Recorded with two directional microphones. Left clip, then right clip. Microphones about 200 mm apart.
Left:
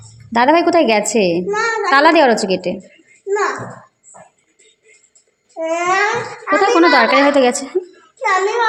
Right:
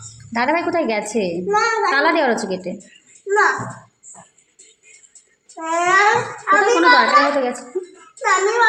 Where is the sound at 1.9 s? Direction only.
40° left (ahead or behind).